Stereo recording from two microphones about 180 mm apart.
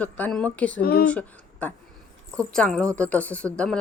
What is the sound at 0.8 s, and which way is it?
Speech, 55° left (ahead or behind).